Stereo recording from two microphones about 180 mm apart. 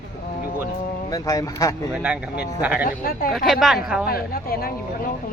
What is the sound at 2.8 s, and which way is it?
Speech, 55° left (ahead or behind).